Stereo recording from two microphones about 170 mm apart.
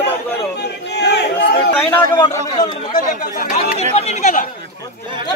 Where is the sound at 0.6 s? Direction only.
80° left.